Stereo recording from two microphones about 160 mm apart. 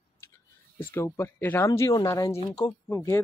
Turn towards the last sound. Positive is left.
turn(degrees=20)  # may be behind; listen again after turning